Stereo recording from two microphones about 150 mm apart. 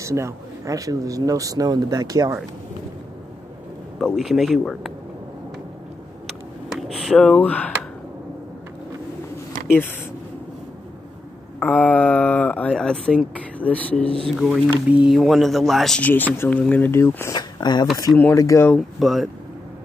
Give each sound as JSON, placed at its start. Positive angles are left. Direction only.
{"t": 0.0, "sound": "speech", "side_deg": -20}
{"t": 4.0, "sound": "speech", "side_deg": 0}
{"t": 6.2, "sound": "a sound", "side_deg": 0}
{"t": 11.6, "sound": "speech", "side_deg": 10}
{"t": 17.4, "sound": "speech", "side_deg": 30}
{"t": 18.8, "sound": "speech", "side_deg": 0}